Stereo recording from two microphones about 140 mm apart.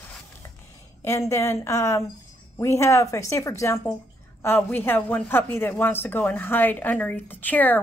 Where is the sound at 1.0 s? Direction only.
20° left (ahead or behind).